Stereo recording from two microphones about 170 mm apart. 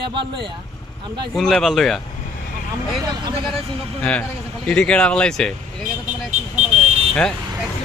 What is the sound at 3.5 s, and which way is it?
Speech, 5° left (ahead or behind).